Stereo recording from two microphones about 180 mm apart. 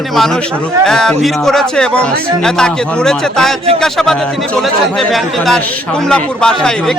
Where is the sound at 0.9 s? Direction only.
5° left (ahead or behind).